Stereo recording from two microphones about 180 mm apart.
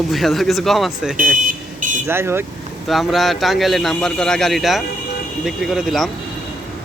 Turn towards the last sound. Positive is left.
turn(degrees=0)  # may be behind; listen again after turning